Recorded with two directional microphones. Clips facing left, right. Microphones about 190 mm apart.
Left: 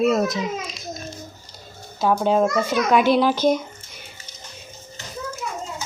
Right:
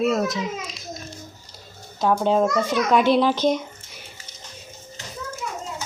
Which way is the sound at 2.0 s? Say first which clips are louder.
Left 1 dB; 5° left (ahead or behind).